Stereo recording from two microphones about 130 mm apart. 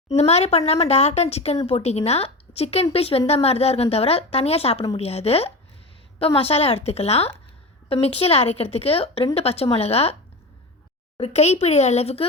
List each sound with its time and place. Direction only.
0.2 s a woman's voice: 55° left (ahead or behind)
11.2 s speech: 55° left (ahead or behind)